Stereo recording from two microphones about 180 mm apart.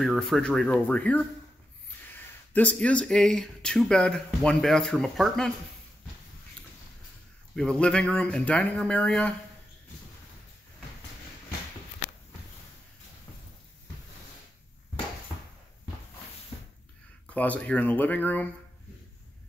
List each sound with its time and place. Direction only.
0.0 s speech: centre (ahead or behind)
7.5 s speech: 5° left (ahead or behind)
17.3 s speech: 10° left (ahead or behind)